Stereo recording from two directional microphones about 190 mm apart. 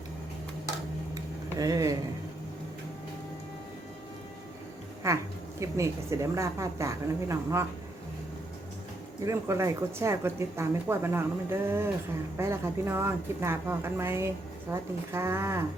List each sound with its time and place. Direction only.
1.1 s a sound: 20° right (ahead or behind)
5.0 s speech: 15° right (ahead or behind)
9.2 s speech: 15° right (ahead or behind)